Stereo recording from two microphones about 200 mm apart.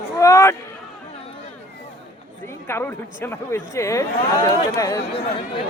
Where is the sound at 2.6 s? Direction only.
10° left (ahead or behind).